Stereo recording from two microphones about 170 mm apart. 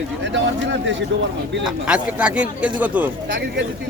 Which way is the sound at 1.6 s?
5° right (ahead or behind).